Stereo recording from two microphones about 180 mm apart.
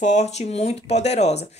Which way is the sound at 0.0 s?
40° left (ahead or behind).